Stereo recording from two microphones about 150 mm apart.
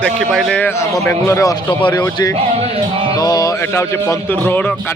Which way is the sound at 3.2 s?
25° left (ahead or behind).